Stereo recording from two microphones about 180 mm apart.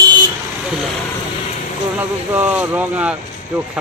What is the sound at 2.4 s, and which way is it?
Speech, 10° right (ahead or behind).